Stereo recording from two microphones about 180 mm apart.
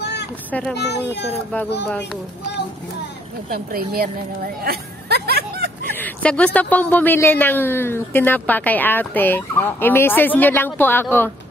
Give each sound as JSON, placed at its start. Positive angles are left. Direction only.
{"t": 0.0, "sound": "a sound", "side_deg": 70}
{"t": 0.5, "sound": "a child's voice", "side_deg": 5}
{"t": 0.7, "sound": "a child's voice", "side_deg": 70}
{"t": 3.5, "sound": "a woman's voice", "side_deg": -55}
{"t": 5.9, "sound": "a man's voice", "side_deg": 10}